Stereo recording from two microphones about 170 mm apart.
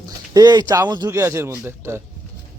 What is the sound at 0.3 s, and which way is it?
Speech, 25° right (ahead or behind).